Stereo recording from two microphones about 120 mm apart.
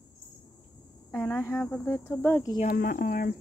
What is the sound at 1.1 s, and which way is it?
Speech, 15° left (ahead or behind).